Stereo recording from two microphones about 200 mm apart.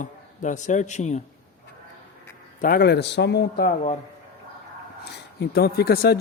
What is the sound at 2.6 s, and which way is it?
A man's voice, 45° left (ahead or behind).